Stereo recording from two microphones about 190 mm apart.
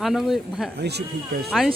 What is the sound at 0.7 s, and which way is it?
Speech, 60° right (ahead or behind).